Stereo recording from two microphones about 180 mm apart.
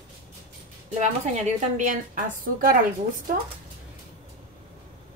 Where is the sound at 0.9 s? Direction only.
40° right (ahead or behind).